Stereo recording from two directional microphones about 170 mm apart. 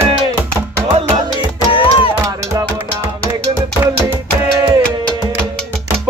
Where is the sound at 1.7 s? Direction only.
30° left (ahead or behind).